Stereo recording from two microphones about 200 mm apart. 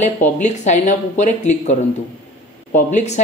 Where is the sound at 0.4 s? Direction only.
35° left (ahead or behind).